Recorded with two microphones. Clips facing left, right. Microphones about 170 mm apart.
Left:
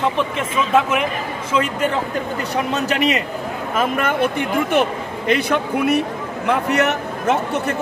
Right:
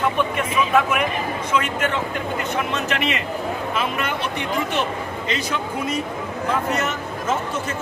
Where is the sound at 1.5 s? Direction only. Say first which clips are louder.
Left 4 dB; 30° left (ahead or behind).